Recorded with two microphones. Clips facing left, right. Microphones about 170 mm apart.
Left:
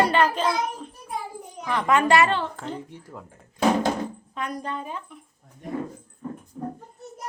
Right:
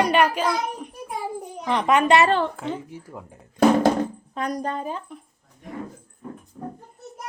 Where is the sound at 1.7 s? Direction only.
20° right (ahead or behind).